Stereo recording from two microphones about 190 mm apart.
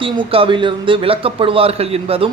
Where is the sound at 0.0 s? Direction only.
30° right (ahead or behind).